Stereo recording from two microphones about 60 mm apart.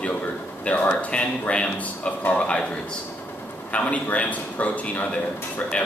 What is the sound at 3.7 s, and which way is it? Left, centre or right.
A man's voice, left.